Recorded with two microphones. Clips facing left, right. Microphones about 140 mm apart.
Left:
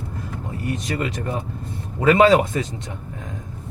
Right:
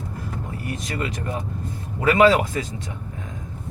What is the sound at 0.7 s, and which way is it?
Speech, 25° left (ahead or behind).